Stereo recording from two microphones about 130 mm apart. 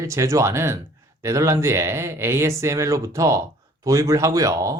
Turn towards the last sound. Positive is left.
turn(degrees=-25)  # may be behind; listen again after turning